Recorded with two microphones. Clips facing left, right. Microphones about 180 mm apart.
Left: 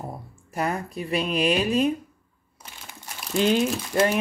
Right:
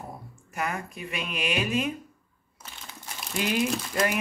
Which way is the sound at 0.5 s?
35° left (ahead or behind).